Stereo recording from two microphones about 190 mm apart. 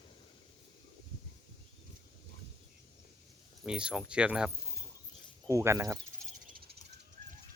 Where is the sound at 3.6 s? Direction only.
5° right (ahead or behind).